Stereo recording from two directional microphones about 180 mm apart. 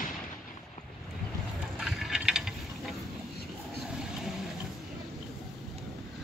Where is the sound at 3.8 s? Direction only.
5° right (ahead or behind).